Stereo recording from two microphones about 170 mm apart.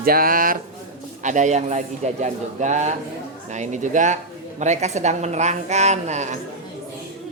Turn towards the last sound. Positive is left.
turn(degrees=-45)  # may be behind; listen again after turning